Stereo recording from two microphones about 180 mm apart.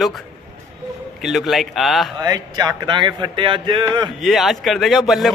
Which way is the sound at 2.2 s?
20° right (ahead or behind).